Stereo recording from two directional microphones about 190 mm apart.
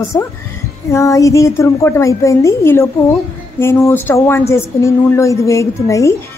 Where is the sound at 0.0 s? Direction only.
15° left (ahead or behind).